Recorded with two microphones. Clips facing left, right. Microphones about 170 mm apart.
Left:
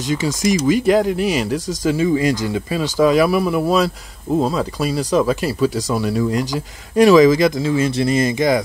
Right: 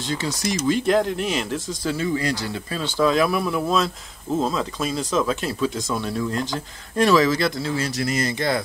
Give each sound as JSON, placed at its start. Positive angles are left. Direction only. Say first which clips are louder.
{"t": 0.0, "sound": "speech", "louder": "left 6 dB", "side_deg": 15}
{"t": 0.3, "sound": "speech", "louder": "left 8 dB", "side_deg": 90}
{"t": 0.7, "sound": "speech", "louder": "left 3 dB", "side_deg": 10}
{"t": 7.9, "sound": "speech", "louder": "left 7 dB", "side_deg": 25}